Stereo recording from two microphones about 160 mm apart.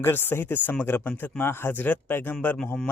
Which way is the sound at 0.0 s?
15° left (ahead or behind).